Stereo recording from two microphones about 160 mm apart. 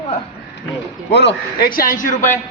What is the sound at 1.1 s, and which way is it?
A man's voice, 90° left.